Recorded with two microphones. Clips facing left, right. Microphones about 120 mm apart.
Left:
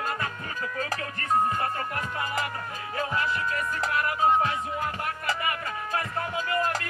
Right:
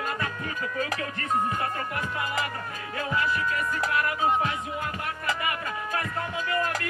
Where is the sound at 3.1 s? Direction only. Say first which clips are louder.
Right 4 dB; 30° left (ahead or behind).